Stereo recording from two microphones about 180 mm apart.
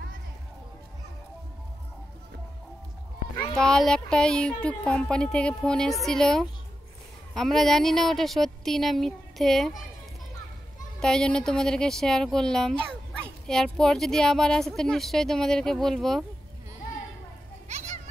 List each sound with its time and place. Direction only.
3.5 s speech: centre (ahead or behind)
11.0 s speech: 5° left (ahead or behind)
17.6 s children playing: 40° right (ahead or behind)